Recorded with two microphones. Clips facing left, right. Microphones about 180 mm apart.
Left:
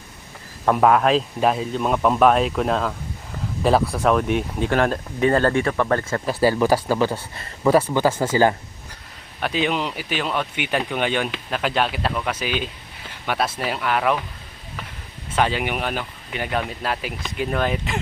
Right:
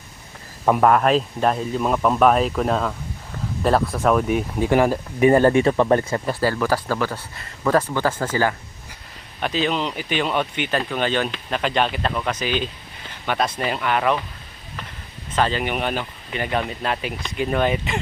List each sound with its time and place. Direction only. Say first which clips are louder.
0.8 s speech: left 1 dB; centre (ahead or behind)
4.7 s speech: right 3 dB; 10° right (ahead or behind)
6.4 s speech: left 5 dB; 15° left (ahead or behind); by 10.6 s centre (ahead or behind)
10.6 s speech: even; 15° left (ahead or behind)
15.3 s speech: even; 10° left (ahead or behind)